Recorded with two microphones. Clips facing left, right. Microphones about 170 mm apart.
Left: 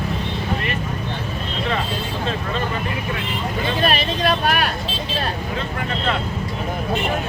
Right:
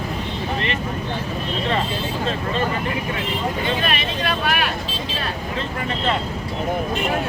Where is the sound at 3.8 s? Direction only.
35° left (ahead or behind).